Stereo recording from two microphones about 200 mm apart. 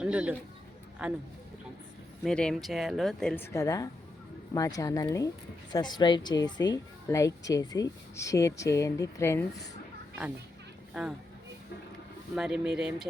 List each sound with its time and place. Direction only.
0.0 s speech: 5° right (ahead or behind)
2.2 s a woman's voice: 5° left (ahead or behind)
12.4 s speech: 5° right (ahead or behind)